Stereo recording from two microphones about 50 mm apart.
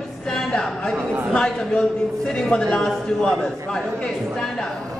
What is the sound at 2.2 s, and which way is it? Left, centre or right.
A man's voice, centre.